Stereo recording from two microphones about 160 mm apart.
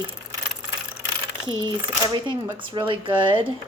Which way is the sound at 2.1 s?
30° right (ahead or behind).